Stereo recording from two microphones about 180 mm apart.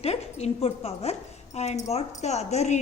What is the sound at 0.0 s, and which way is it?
A woman's voice, 35° left (ahead or behind).